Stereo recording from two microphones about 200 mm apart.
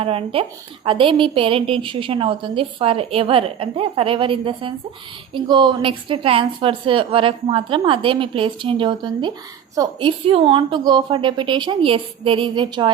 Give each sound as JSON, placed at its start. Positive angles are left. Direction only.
{"t": 0.0, "sound": "a woman's voice", "side_deg": -30}